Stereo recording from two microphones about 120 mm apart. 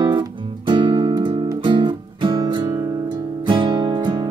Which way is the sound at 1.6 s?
45° right (ahead or behind).